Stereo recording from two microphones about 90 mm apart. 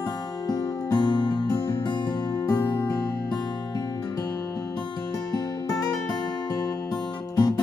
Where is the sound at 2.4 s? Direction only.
60° left (ahead or behind).